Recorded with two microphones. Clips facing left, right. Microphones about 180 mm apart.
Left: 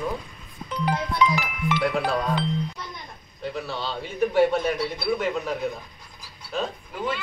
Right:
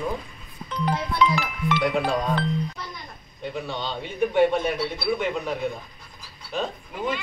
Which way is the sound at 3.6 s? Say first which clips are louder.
Even; 5° left (ahead or behind).